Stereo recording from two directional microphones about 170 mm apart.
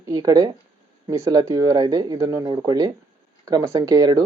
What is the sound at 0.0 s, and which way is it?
A man's voice, 20° right (ahead or behind).